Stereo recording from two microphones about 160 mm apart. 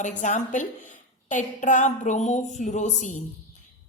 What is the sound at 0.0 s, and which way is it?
A woman's voice, 50° left (ahead or behind).